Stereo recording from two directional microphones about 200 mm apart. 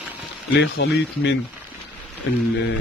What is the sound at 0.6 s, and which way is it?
Speech, 55° left (ahead or behind).